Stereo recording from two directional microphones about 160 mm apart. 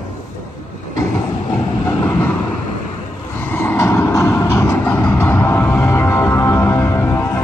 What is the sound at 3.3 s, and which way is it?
Vehicle, 15° left (ahead or behind).